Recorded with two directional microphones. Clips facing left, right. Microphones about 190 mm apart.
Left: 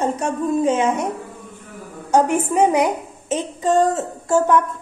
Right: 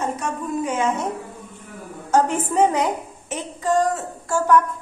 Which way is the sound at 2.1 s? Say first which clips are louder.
Left 3 dB; 15° left (ahead or behind).